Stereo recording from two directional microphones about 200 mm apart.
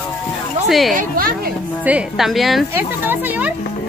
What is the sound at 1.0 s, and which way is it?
Speech, 45° right (ahead or behind).